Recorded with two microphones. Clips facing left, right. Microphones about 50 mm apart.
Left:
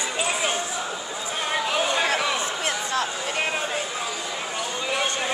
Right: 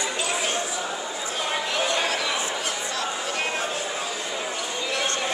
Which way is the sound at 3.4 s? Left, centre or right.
Centre.